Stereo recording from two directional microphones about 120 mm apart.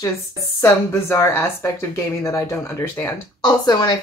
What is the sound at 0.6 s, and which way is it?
A woman's voice, 20° left (ahead or behind).